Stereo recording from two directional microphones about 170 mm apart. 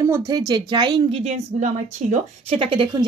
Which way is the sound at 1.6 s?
45° right (ahead or behind).